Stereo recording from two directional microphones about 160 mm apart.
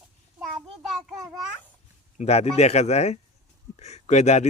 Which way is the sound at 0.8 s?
Centre (ahead or behind).